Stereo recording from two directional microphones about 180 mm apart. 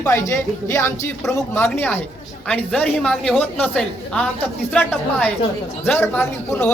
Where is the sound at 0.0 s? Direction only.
15° left (ahead or behind).